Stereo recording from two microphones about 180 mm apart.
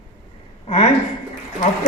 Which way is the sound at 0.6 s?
40° left (ahead or behind).